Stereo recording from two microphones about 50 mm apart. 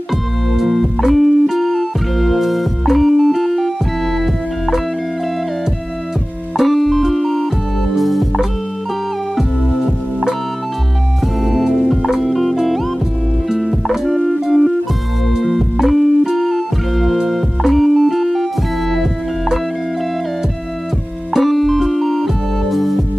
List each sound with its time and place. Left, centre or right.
0.5 s music: centre
4.2 s organ: centre
6.5 s music: centre
11.4 s music: centre
21.3 s music: centre